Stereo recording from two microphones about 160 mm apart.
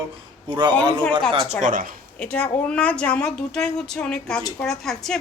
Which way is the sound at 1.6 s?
50° right (ahead or behind).